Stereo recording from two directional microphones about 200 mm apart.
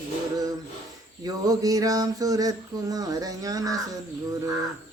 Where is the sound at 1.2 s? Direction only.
20° right (ahead or behind).